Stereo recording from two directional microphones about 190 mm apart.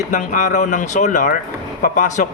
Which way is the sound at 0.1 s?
40° left (ahead or behind).